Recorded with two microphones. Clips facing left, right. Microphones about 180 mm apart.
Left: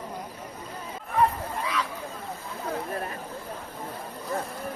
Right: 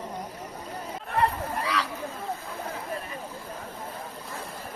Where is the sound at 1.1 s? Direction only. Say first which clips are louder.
Left 1 dB; 75° right (ahead or behind).